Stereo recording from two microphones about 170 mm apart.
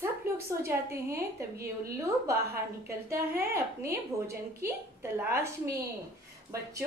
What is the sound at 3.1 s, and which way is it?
Speech, 15° right (ahead or behind).